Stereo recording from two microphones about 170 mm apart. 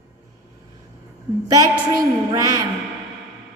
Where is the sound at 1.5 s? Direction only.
20° right (ahead or behind).